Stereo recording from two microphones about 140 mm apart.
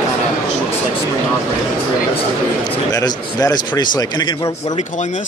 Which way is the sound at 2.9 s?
30° left (ahead or behind).